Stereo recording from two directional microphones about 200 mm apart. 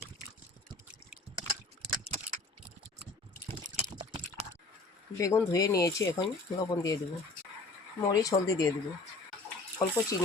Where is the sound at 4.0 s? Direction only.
25° right (ahead or behind).